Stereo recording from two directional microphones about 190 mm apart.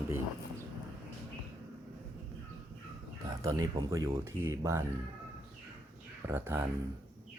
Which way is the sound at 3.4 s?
20° right (ahead or behind).